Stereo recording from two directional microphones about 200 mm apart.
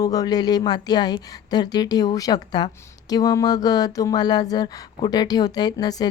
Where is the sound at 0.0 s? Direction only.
20° left (ahead or behind).